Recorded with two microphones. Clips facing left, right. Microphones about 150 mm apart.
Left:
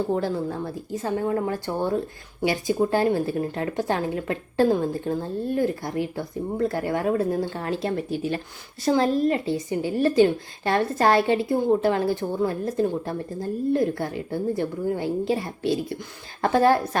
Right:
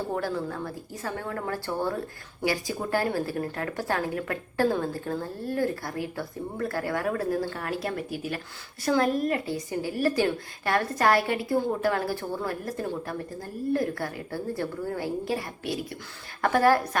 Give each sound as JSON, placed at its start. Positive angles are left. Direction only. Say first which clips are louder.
{"t": 0.1, "sound": "a woman's voice", "louder": "left 5 dB", "side_deg": 25}